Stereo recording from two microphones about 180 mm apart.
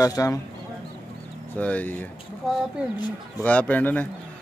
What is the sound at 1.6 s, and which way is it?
Speech, 10° left (ahead or behind).